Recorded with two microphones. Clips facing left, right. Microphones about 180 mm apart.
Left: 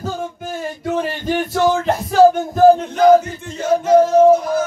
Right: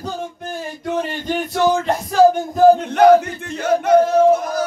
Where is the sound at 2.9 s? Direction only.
65° right (ahead or behind).